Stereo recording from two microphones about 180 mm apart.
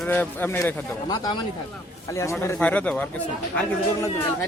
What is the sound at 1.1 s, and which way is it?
A man's voice, 25° left (ahead or behind).